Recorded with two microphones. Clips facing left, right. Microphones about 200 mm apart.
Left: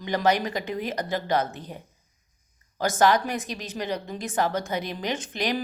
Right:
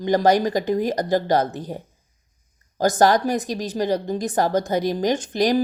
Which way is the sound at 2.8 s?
40° right (ahead or behind).